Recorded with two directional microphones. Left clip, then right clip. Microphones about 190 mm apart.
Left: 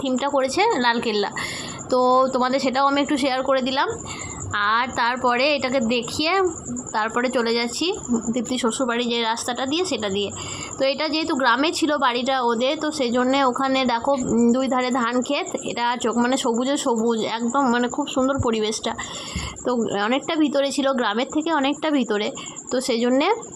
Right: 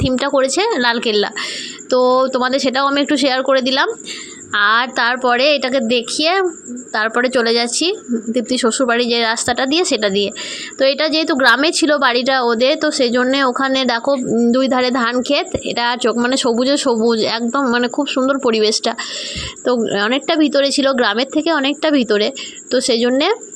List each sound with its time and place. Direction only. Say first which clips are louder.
0.1 s a woman's voice: right 5 dB; 20° right (ahead or behind)